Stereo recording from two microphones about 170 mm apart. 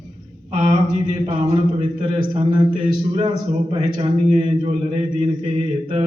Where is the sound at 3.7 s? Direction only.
40° right (ahead or behind).